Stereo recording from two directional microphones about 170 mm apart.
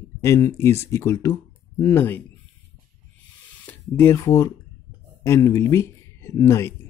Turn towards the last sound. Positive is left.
turn(degrees=15)  # may be behind; listen again after turning